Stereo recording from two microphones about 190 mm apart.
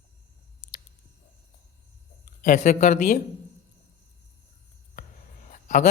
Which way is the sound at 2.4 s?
40° left (ahead or behind).